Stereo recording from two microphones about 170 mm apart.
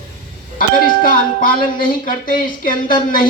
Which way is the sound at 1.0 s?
60° left (ahead or behind).